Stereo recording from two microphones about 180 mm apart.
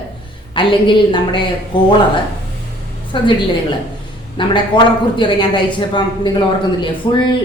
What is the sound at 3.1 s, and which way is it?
Speech, 25° left (ahead or behind).